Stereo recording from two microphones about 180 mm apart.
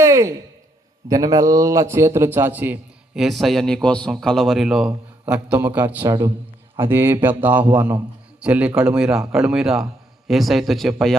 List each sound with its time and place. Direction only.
0.0 s a sound: 15° right (ahead or behind)
1.0 s a man's voice: 20° right (ahead or behind)
5.8 s a man's voice: 20° right (ahead or behind); by 11.2 s centre (ahead or behind)